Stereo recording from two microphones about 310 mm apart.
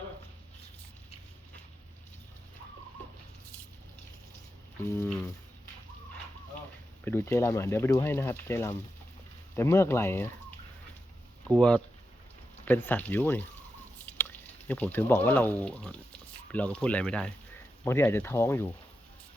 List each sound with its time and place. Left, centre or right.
4.9 s speech: centre
7.0 s speech: centre
11.4 s speech: centre